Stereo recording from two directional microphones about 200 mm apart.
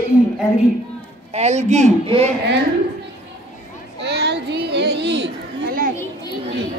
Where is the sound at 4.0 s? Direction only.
60° right (ahead or behind).